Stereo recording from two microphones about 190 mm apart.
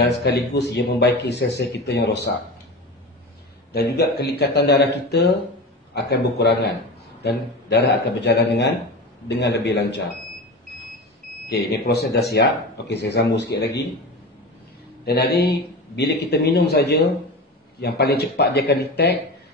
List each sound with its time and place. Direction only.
0.0 s a man's voice: 60° left (ahead or behind)
3.7 s a man's voice: 60° left (ahead or behind)
11.4 s a man's voice: 55° left (ahead or behind)
15.0 s a man's voice: 60° left (ahead or behind)